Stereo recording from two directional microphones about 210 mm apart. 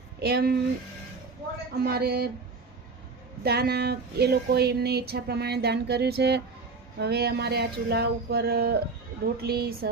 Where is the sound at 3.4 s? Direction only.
50° right (ahead or behind).